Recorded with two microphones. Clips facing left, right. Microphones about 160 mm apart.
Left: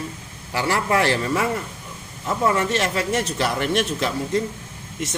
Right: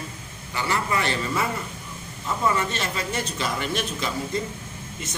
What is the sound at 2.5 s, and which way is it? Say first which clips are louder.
A man's voice: left 5 dB; 75° left (ahead or behind).